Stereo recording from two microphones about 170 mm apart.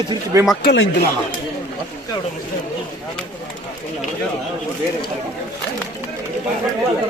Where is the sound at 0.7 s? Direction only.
70° left (ahead or behind).